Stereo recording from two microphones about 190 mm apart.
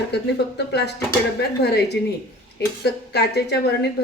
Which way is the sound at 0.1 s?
60° left (ahead or behind).